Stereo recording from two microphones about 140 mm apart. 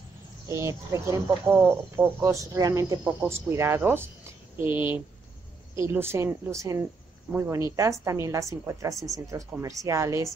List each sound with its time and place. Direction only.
0.5 s a woman's voice: 20° right (ahead or behind)